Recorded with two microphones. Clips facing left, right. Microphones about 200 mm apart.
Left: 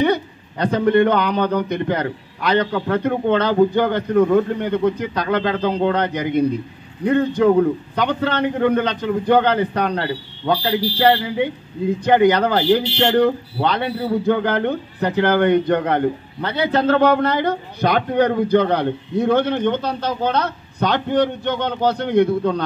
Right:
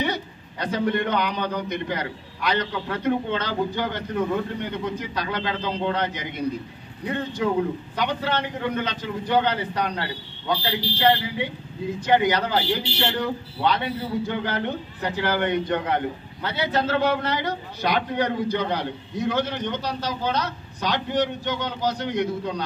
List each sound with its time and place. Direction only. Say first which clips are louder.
0.0 s a man's voice: left 9 dB; 55° left (ahead or behind)